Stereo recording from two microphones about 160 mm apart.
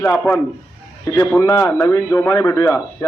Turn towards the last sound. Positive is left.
turn(degrees=20)  # may be behind; listen again after turning